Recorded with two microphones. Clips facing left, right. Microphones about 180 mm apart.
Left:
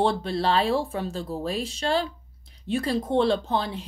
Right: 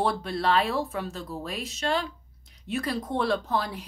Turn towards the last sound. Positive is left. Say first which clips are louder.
# left 2 dB
turn(degrees=25)  # may be behind; listen again after turning